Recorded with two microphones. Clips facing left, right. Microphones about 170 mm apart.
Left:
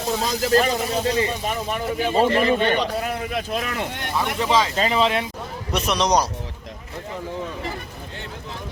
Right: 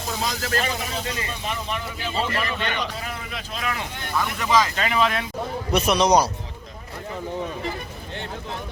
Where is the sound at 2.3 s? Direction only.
30° left (ahead or behind).